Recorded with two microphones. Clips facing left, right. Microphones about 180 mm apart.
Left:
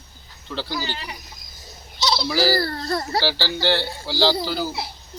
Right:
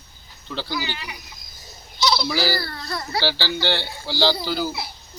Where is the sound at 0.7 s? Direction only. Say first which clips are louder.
Even; 35° left (ahead or behind).